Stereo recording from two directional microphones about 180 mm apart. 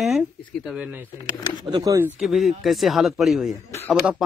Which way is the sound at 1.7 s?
20° right (ahead or behind).